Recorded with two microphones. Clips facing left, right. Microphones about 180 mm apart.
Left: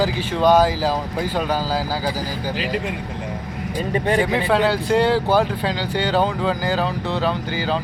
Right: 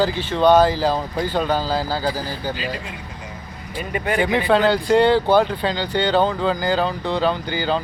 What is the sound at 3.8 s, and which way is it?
Speech, 30° left (ahead or behind).